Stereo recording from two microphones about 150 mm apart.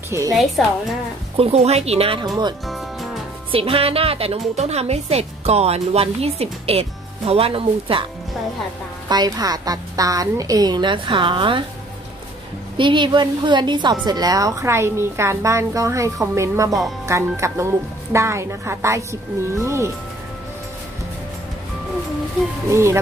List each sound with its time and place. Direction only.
0.3 s a woman's voice: centre (ahead or behind)
1.3 s speech: 45° right (ahead or behind)
3.5 s a woman's voice: 40° right (ahead or behind)
9.1 s a woman's voice: 25° right (ahead or behind)
12.7 s a woman's voice: 35° right (ahead or behind)
22.7 s a woman's voice: 20° right (ahead or behind)